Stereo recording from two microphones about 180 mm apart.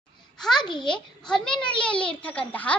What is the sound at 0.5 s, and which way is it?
Speech, 25° left (ahead or behind).